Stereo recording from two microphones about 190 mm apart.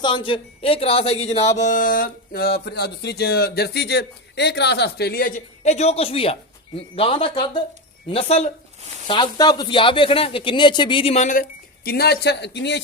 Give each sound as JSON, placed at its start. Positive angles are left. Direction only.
{"t": 0.0, "sound": "speech", "side_deg": 25}